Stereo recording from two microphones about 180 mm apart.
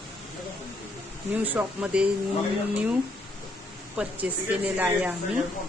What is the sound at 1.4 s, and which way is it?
Speech, 10° right (ahead or behind).